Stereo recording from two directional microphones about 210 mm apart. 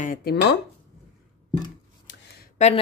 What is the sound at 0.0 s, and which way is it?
Speech, 45° left (ahead or behind).